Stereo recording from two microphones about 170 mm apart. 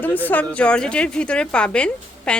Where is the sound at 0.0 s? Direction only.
10° left (ahead or behind).